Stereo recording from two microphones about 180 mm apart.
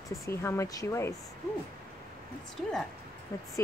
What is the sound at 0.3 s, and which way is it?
Speech, 15° left (ahead or behind).